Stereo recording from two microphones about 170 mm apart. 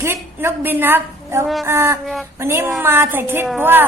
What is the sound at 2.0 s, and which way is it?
Speech, centre (ahead or behind).